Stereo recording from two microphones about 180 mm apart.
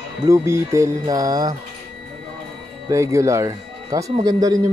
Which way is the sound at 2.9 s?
15° right (ahead or behind).